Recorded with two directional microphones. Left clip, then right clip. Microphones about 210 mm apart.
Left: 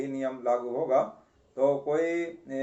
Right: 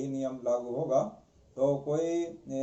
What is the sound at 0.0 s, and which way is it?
Speech, 40° left (ahead or behind).